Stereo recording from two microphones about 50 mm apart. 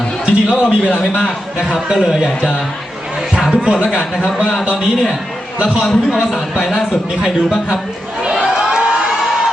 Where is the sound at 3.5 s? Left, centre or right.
Centre.